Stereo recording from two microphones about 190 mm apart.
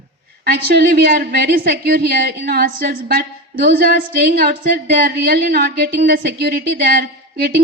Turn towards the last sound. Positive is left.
turn(degrees=-55)  # may be behind; listen again after turning